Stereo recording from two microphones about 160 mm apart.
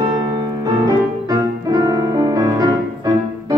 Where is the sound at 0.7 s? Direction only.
25° right (ahead or behind).